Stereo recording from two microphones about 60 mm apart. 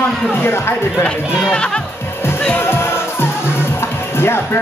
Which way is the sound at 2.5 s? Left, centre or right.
Left.